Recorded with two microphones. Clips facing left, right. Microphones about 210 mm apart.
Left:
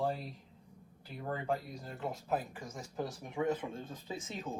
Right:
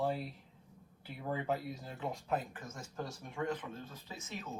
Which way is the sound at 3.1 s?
20° left (ahead or behind).